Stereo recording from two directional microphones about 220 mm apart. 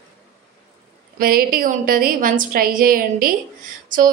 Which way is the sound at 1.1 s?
40° right (ahead or behind).